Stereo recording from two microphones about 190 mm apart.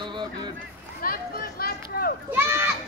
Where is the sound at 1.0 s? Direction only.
50° left (ahead or behind).